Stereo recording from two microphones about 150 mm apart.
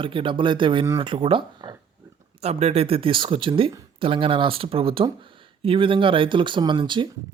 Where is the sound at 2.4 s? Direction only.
45° right (ahead or behind).